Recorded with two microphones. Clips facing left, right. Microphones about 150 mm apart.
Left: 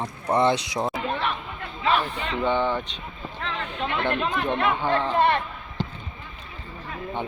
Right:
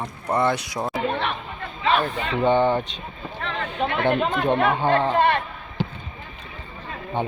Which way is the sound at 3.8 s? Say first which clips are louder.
Right 4 dB; 55° right (ahead or behind).